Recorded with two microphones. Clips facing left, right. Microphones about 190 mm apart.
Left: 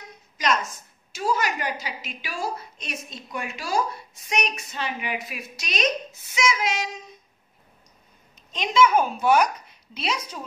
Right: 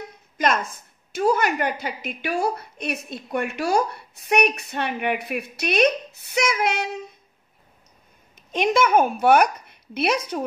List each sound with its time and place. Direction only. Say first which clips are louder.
0.4 s a woman's voice: right 3 dB; 55° right (ahead or behind)
8.5 s a woman's voice: right 1 dB; 55° right (ahead or behind)